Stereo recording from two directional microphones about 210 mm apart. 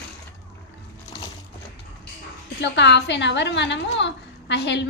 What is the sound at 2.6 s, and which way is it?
A woman's voice, 55° left (ahead or behind).